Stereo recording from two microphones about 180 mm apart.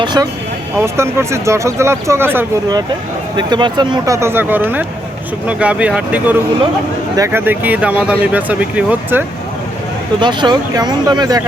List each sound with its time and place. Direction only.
0.0 s speech: 25° right (ahead or behind)
3.3 s speech: 25° right (ahead or behind)
10.2 s speech: 25° right (ahead or behind)